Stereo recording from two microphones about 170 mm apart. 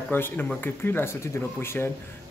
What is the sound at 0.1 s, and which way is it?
A man's voice, 10° left (ahead or behind).